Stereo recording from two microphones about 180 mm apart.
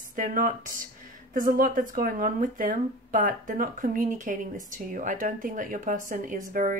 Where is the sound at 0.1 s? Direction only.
50° right (ahead or behind).